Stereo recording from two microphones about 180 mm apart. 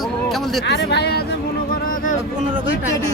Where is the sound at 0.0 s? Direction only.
Centre (ahead or behind).